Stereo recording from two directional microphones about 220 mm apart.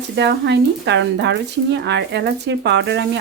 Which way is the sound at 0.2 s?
50° right (ahead or behind).